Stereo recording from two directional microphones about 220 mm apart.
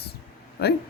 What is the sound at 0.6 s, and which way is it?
Speech, 45° left (ahead or behind).